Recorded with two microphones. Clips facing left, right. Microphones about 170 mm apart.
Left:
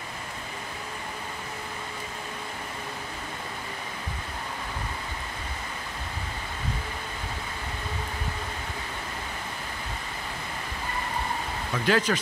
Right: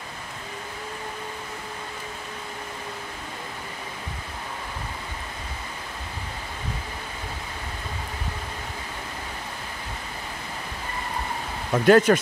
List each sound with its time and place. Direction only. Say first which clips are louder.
11.7 s speech: right 9 dB; 50° right (ahead or behind)